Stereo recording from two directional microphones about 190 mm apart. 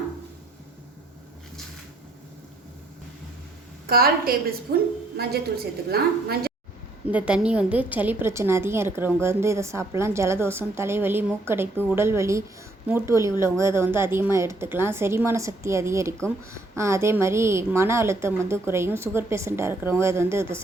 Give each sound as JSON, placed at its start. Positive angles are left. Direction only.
{"t": 3.8, "sound": "a woman's voice", "side_deg": -50}
{"t": 7.1, "sound": "a woman's voice", "side_deg": -5}